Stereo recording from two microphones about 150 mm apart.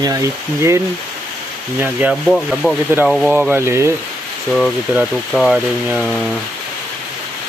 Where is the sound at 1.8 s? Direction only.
10° right (ahead or behind).